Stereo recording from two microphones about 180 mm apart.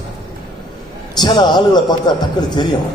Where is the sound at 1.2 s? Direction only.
25° left (ahead or behind).